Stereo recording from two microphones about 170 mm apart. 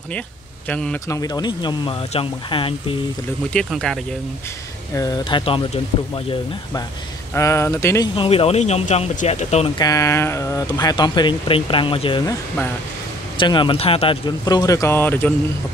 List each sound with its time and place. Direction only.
0.7 s speech: 5° left (ahead or behind)
1.0 s speech: 20° left (ahead or behind)
3.4 s speech: 5° left (ahead or behind)
4.9 s speech: 20° left (ahead or behind)
7.3 s speech: 15° left (ahead or behind)
8.2 s speech: 35° left (ahead or behind)
9.8 s speech: 20° left (ahead or behind)
13.4 s speech: 30° left (ahead or behind); by 15.3 s 10° left (ahead or behind)